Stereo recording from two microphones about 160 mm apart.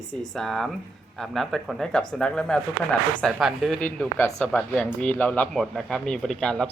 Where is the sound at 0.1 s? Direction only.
Centre (ahead or behind).